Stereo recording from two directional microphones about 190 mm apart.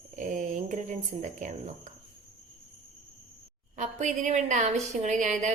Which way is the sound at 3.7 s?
40° right (ahead or behind).